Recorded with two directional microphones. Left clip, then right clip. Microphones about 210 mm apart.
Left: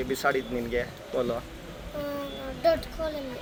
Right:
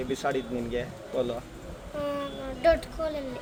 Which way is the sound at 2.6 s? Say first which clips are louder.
Right 1 dB; 5° right (ahead or behind).